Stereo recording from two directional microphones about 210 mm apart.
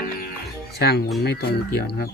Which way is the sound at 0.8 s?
50° left (ahead or behind).